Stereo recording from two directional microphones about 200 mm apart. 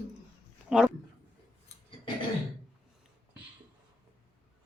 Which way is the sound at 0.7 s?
5° right (ahead or behind).